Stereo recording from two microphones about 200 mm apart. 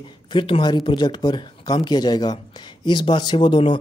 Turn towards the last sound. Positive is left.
turn(degrees=25)  # may be behind; listen again after turning